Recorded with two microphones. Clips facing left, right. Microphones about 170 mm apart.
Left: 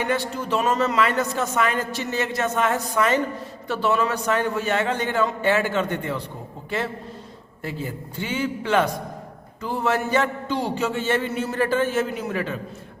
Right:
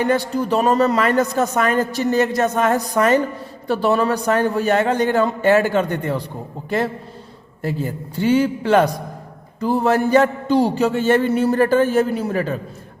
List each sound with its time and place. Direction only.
0.0 s a man's voice: 35° right (ahead or behind)